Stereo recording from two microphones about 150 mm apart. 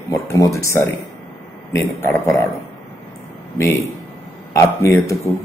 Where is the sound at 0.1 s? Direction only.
20° left (ahead or behind).